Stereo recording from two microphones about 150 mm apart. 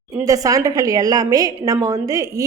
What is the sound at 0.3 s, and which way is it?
A woman's voice, 25° right (ahead or behind).